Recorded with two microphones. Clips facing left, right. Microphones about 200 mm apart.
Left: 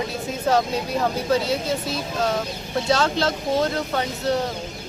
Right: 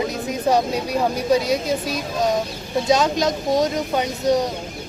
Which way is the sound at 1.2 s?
15° right (ahead or behind).